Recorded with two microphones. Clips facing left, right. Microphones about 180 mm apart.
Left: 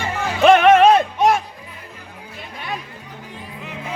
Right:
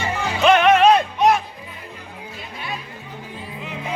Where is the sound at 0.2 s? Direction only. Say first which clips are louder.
Left 3 dB; 50° left (ahead or behind).